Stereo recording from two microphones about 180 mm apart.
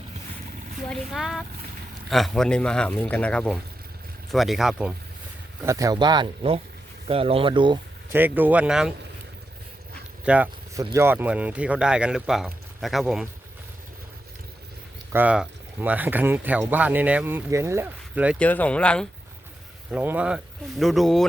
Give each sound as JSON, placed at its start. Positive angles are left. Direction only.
{"t": 0.8, "sound": "speech", "side_deg": 0}
{"t": 5.6, "sound": "speech", "side_deg": -20}
{"t": 8.1, "sound": "speech", "side_deg": -10}
{"t": 10.2, "sound": "speech", "side_deg": -10}
{"t": 15.1, "sound": "speech", "side_deg": -10}
{"t": 18.3, "sound": "speech", "side_deg": 10}
{"t": 19.9, "sound": "speech", "side_deg": -10}